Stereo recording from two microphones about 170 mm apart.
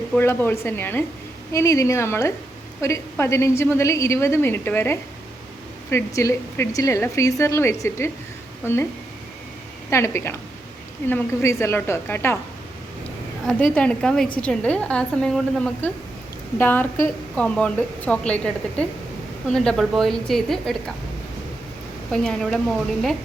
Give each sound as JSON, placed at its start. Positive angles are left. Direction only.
{"t": 0.1, "sound": "a woman's voice", "side_deg": 10}
{"t": 6.1, "sound": "a woman's voice", "side_deg": 20}
{"t": 9.9, "sound": "a woman's voice", "side_deg": 15}
{"t": 13.5, "sound": "a woman's voice", "side_deg": 5}
{"t": 22.1, "sound": "a woman's voice", "side_deg": 5}